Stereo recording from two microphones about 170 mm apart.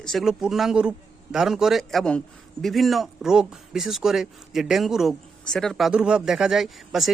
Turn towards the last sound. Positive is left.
turn(degrees=0)  # may be behind; listen again after turning